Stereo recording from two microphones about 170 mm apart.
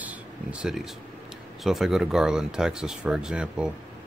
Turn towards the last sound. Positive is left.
turn(degrees=-5)  # may be behind; listen again after turning